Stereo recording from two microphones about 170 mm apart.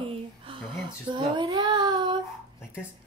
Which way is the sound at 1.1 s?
30° right (ahead or behind).